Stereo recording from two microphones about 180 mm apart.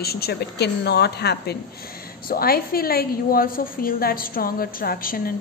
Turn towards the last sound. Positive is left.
turn(degrees=55)  # may be behind; listen again after turning